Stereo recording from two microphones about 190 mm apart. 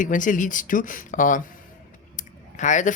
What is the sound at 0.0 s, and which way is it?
Speech, 45° left (ahead or behind).